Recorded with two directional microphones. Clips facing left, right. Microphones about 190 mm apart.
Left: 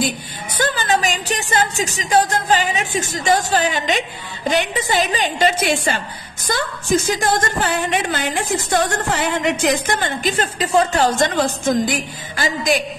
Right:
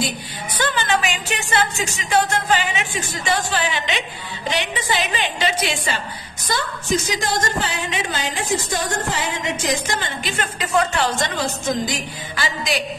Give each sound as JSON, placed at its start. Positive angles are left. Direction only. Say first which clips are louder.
{"t": 0.6, "sound": "a woman's voice", "louder": "left 2 dB", "side_deg": 40}
{"t": 10.3, "sound": "a woman's voice", "louder": "left 2 dB", "side_deg": 35}